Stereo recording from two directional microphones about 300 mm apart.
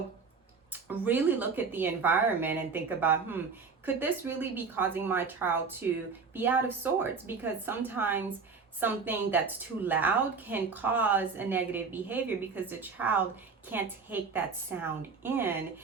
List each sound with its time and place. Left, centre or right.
0.7 s a woman's voice: centre